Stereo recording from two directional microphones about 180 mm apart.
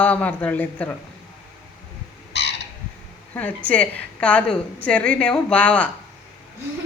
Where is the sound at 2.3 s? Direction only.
75° left (ahead or behind).